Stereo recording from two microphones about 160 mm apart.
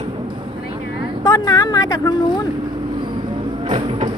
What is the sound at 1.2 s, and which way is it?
Speech, 25° left (ahead or behind).